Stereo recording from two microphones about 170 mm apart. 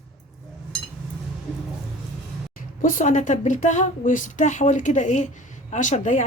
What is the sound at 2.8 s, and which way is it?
A woman's voice, 45° left (ahead or behind).